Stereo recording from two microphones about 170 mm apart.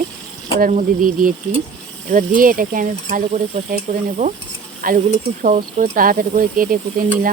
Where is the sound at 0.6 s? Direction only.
45° right (ahead or behind).